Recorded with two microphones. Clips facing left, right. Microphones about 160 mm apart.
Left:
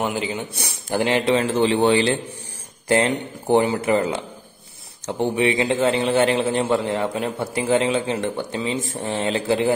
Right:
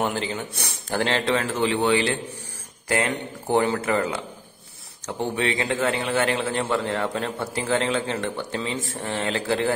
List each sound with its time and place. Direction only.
0.0 s a man's voice: 10° left (ahead or behind)